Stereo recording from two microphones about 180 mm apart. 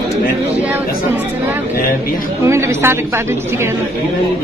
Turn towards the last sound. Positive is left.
turn(degrees=-15)  # may be behind; listen again after turning